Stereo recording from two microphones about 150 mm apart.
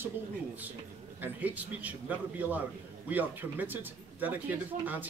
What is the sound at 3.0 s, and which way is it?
Speech, 10° right (ahead or behind).